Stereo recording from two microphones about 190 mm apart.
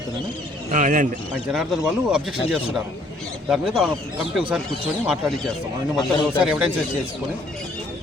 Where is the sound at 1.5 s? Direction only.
5° right (ahead or behind).